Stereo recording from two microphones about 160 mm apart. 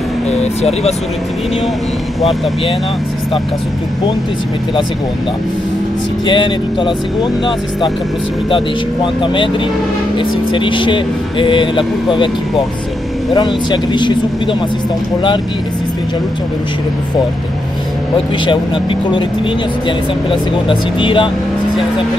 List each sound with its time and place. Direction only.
0.4 s speech: 40° left (ahead or behind)
6.2 s speech: 30° left (ahead or behind)
8.5 s speech: 30° left (ahead or behind)
13.3 s speech: 25° left (ahead or behind)
18.1 s speech: 30° left (ahead or behind)
20.2 s speech: 30° left (ahead or behind)